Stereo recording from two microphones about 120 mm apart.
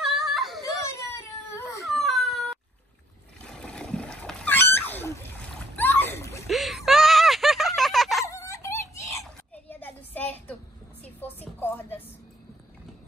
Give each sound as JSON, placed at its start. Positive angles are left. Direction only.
{"t": 0.0, "sound": "dog", "side_deg": 0}
{"t": 1.1, "sound": "baby cry", "side_deg": 25}
{"t": 1.9, "sound": "baby cry", "side_deg": 0}
{"t": 3.4, "sound": "a sound", "side_deg": 5}
{"t": 5.4, "sound": "splash", "side_deg": 15}
{"t": 6.5, "sound": "a sound", "side_deg": 0}
{"t": 8.3, "sound": "wail", "side_deg": 25}
{"t": 9.7, "sound": "child singing", "side_deg": 15}
{"t": 11.2, "sound": "music", "side_deg": 15}